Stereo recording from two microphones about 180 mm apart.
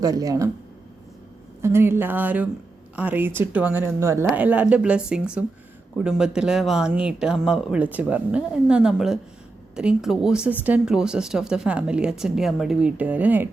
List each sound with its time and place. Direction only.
0.0 s speech: 20° right (ahead or behind)
1.6 s speech: 15° right (ahead or behind)